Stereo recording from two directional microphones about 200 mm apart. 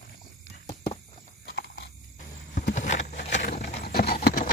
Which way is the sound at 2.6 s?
45° left (ahead or behind).